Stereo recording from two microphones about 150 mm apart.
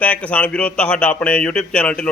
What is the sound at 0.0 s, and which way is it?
Speech, 10° left (ahead or behind).